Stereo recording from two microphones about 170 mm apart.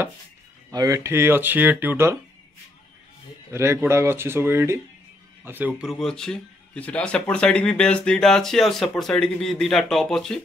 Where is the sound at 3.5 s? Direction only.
15° right (ahead or behind).